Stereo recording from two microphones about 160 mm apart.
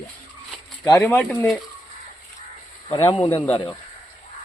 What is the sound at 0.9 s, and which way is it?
Speech, 10° left (ahead or behind).